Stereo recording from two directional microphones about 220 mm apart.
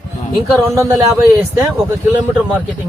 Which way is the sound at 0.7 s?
10° right (ahead or behind).